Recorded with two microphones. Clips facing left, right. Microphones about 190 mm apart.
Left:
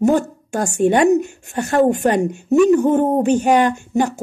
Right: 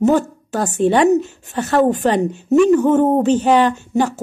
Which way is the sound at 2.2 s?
10° left (ahead or behind).